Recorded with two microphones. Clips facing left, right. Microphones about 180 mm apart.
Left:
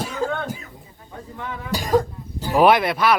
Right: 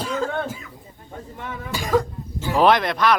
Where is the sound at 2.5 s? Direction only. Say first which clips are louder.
Left 2 dB; 10° left (ahead or behind).